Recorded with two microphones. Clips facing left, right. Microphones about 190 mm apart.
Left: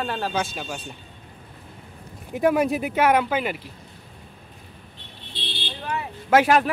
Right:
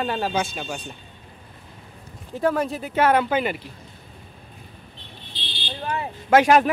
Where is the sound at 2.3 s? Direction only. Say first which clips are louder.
Left 3 dB; 15° left (ahead or behind).